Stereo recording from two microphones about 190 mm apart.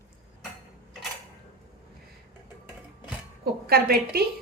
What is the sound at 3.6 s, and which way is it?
Speech, 55° right (ahead or behind).